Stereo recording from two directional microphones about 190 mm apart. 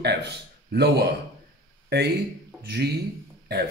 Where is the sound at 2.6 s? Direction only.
55° right (ahead or behind).